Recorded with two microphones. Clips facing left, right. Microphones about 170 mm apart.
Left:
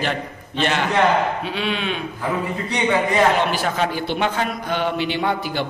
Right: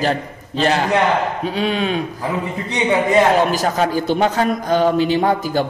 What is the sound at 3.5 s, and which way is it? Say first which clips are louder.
A man's voice: right 4 dB; 40° right (ahead or behind).